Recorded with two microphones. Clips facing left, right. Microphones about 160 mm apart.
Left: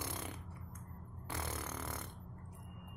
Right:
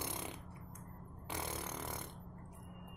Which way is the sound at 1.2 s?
20° right (ahead or behind).